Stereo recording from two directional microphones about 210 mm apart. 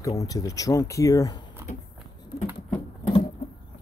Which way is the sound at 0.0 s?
15° left (ahead or behind).